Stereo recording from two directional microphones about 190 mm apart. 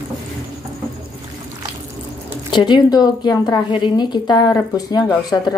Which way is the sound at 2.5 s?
25° left (ahead or behind).